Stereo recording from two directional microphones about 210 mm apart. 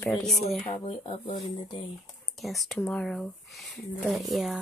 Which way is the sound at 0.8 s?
25° left (ahead or behind).